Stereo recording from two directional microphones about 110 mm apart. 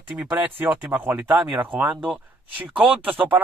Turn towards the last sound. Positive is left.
turn(degrees=-15)  # may be behind; listen again after turning